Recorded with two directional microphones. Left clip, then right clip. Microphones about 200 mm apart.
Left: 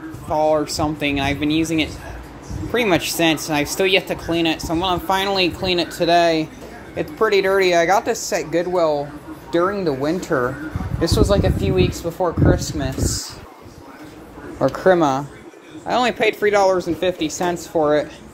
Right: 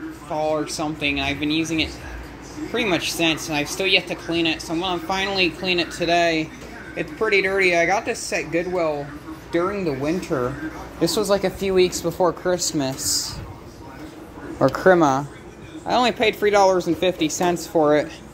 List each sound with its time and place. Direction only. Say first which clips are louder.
0.3 s speech: left 6 dB; 25° left (ahead or behind)
2.7 s speech: left 4 dB; 30° left (ahead or behind); by 10.5 s 10° left (ahead or behind)
11.0 s speech: left 2 dB; centre (ahead or behind)
14.6 s speech: even; 5° right (ahead or behind)